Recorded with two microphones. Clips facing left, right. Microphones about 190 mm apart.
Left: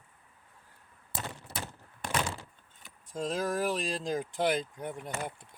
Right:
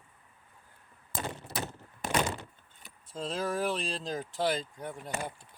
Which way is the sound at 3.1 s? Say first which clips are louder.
Left 1 dB; 10° left (ahead or behind).